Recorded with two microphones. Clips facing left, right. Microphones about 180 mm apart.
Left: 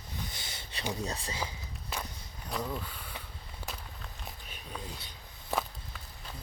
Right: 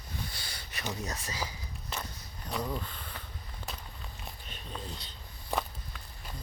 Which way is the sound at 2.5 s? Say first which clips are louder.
Right 1 dB; centre (ahead or behind).